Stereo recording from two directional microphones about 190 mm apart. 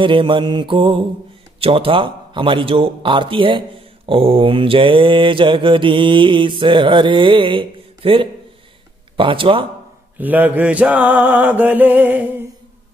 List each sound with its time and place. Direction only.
0.0 s a man's voice: 25° right (ahead or behind)
10.1 s mantra: 10° right (ahead or behind)